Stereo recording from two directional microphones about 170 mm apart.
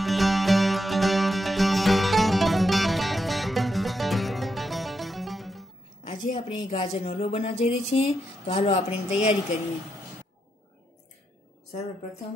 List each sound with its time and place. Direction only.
0.0 s music: centre (ahead or behind)
6.3 s speech: 35° left (ahead or behind)